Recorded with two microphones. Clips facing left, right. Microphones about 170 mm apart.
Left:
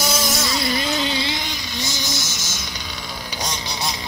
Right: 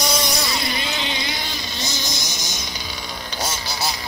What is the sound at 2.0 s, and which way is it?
Vehicle, 15° right (ahead or behind).